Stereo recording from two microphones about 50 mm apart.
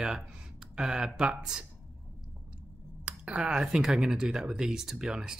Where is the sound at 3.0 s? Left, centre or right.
Right.